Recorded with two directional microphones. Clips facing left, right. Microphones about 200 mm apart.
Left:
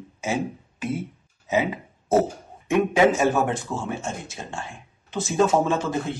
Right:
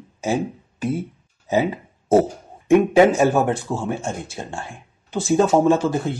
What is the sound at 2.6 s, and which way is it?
Speech, 35° right (ahead or behind).